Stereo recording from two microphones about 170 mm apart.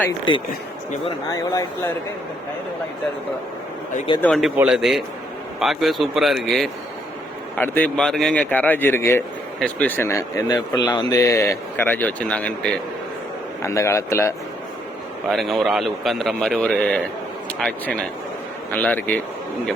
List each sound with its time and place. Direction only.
4.2 s speech: centre (ahead or behind)
7.6 s speech: 10° left (ahead or behind)
15.3 s speech: centre (ahead or behind)